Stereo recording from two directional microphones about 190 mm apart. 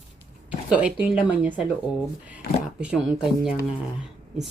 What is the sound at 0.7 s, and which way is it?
Speech, 5° right (ahead or behind).